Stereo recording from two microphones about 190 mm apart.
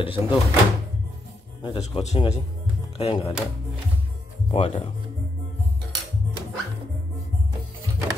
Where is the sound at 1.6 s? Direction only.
25° left (ahead or behind).